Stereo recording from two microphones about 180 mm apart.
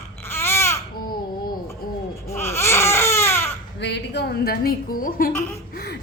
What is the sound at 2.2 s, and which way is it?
Baby cry, 15° left (ahead or behind).